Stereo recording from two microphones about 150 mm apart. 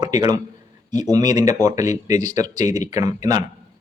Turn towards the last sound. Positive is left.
turn(degrees=-25)  # may be behind; listen again after turning